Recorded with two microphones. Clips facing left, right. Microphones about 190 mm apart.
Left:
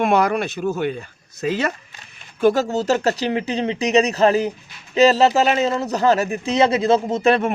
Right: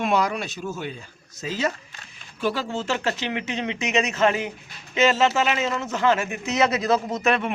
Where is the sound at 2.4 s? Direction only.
45° left (ahead or behind).